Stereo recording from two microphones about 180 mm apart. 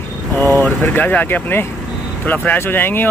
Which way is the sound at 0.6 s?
10° left (ahead or behind).